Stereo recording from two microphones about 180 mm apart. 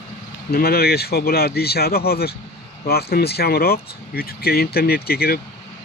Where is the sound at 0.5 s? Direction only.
60° left (ahead or behind).